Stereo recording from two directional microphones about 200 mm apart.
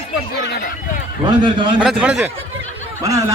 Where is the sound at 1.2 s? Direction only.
25° right (ahead or behind).